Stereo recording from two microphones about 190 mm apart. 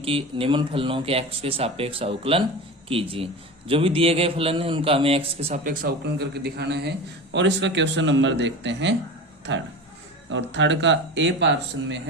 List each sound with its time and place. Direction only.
0.0 s speech: 30° right (ahead or behind)
5.6 s speech: 55° right (ahead or behind); by 11.9 s 70° right (ahead or behind)